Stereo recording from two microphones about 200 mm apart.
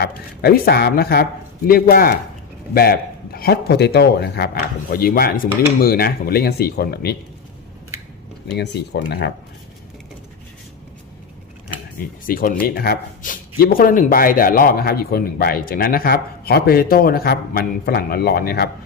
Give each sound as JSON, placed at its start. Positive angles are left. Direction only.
{"t": 0.0, "sound": "speech", "side_deg": 50}
{"t": 8.5, "sound": "speech", "side_deg": 55}
{"t": 11.9, "sound": "speech", "side_deg": 45}